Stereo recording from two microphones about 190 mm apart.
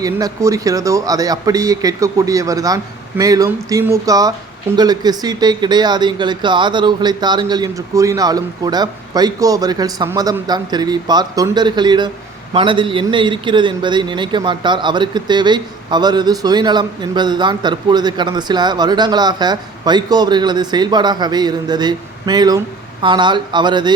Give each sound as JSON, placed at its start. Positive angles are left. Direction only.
{"t": 0.0, "sound": "a man's voice", "side_deg": -20}